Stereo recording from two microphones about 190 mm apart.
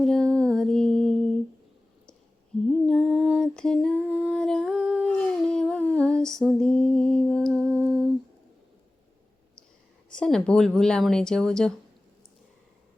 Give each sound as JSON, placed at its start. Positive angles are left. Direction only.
{"t": 0.0, "sound": "music", "side_deg": 5}
{"t": 2.6, "sound": "lullaby", "side_deg": 0}
{"t": 3.9, "sound": "humming", "side_deg": -10}
{"t": 10.1, "sound": "speech", "side_deg": 5}